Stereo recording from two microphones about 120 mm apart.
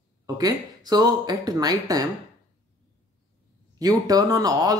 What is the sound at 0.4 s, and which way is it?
Speech, 35° right (ahead or behind).